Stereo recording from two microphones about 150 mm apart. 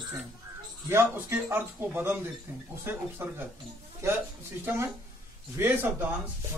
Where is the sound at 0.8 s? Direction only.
15° right (ahead or behind).